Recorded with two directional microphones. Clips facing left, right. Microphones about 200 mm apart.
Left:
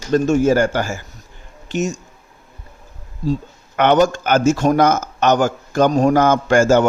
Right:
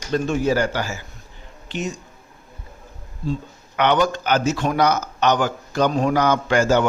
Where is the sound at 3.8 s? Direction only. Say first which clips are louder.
Left 5 dB; 45° left (ahead or behind).